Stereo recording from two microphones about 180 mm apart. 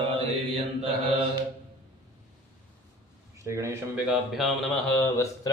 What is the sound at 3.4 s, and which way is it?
Speech, 15° right (ahead or behind).